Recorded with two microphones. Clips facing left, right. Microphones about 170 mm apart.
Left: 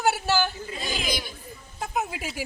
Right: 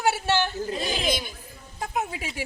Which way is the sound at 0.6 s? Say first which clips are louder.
Right 6 dB; 40° right (ahead or behind).